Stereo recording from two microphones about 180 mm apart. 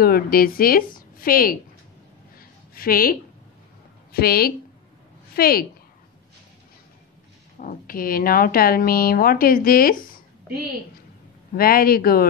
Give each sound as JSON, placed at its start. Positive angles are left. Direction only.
{"t": 0.0, "sound": "a woman's voice", "side_deg": 55}
{"t": 2.7, "sound": "a woman's voice", "side_deg": 55}
{"t": 7.5, "sound": "a woman's voice", "side_deg": 50}
{"t": 11.5, "sound": "a man's voice", "side_deg": 55}